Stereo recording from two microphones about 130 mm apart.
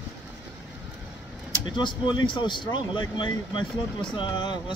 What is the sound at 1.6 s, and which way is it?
Speech, 35° left (ahead or behind).